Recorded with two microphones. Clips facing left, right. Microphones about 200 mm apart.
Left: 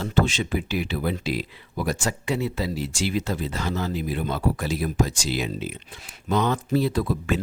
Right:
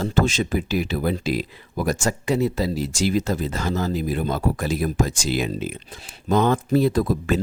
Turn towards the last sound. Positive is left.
turn(degrees=-40)  # may be behind; listen again after turning